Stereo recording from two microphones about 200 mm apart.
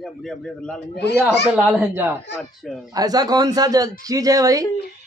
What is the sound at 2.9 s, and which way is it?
A man's voice, 20° right (ahead or behind).